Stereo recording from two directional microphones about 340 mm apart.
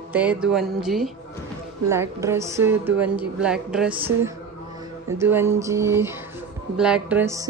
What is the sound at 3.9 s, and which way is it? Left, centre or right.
A woman's voice, centre.